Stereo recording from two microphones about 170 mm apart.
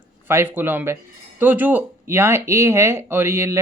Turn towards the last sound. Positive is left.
turn(degrees=-15)  # may be behind; listen again after turning